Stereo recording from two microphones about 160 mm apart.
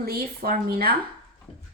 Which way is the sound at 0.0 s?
70° right (ahead or behind).